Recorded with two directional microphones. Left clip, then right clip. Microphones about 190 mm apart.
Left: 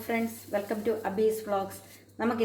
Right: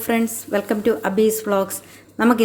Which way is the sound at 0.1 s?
55° right (ahead or behind).